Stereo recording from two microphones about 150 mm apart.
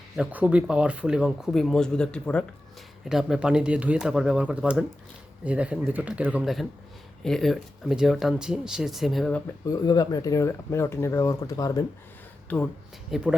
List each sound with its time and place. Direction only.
0.2 s speech: 10° right (ahead or behind)
9.6 s speech: 25° left (ahead or behind)
12.5 s speech: 10° left (ahead or behind)
13.1 s speech: 5° right (ahead or behind)